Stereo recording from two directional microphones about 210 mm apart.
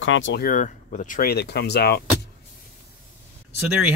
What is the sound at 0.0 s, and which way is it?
Speech, 65° left (ahead or behind).